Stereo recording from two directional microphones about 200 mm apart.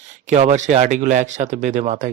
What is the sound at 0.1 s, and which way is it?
A man's voice, 35° right (ahead or behind).